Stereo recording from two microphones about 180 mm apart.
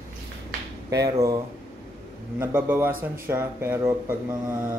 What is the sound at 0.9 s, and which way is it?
Speech, 20° right (ahead or behind).